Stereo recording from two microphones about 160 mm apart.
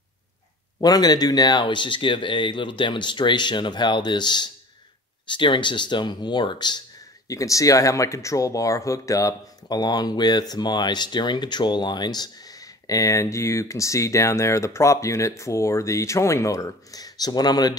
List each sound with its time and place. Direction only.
0.7 s speech: 25° left (ahead or behind)